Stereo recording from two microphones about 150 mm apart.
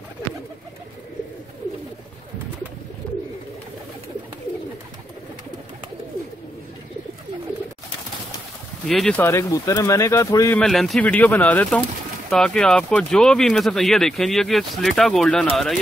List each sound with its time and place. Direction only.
8.8 s speech: 5° left (ahead or behind)
9.2 s speech: 20° left (ahead or behind)
10.6 s speech: centre (ahead or behind)